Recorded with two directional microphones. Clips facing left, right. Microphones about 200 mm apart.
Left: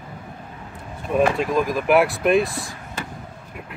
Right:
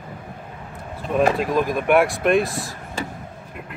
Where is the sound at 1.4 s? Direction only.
Centre (ahead or behind).